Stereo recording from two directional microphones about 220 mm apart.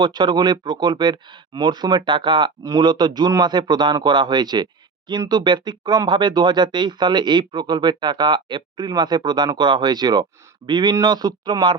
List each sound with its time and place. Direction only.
0.0 s speech: 20° right (ahead or behind)